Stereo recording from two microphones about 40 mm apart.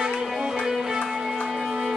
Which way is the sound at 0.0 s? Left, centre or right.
Centre.